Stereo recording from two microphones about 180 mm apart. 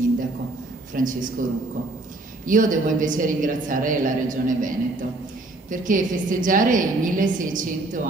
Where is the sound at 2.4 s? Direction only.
50° right (ahead or behind).